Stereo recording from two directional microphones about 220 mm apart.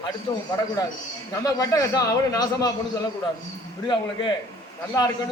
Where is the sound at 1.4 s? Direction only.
15° left (ahead or behind).